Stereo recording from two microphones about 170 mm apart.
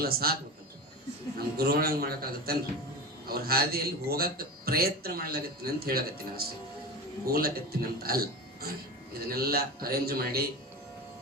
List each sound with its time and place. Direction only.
0.0 s a man's voice: 65° right (ahead or behind)
1.4 s a man's voice: 65° right (ahead or behind)